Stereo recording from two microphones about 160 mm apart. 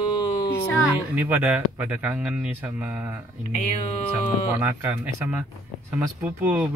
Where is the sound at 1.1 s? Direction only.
10° right (ahead or behind).